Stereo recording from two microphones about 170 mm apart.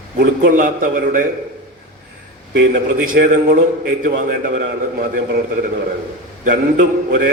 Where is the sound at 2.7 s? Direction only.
55° right (ahead or behind).